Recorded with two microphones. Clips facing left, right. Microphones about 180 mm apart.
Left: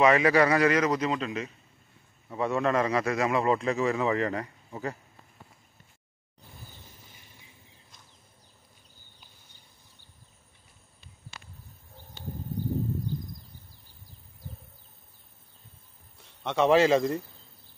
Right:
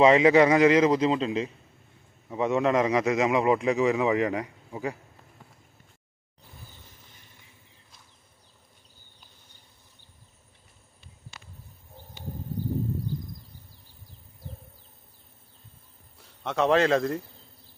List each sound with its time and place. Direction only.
0.0 s a man's voice: 20° right (ahead or behind)
16.2 s a man's voice: centre (ahead or behind)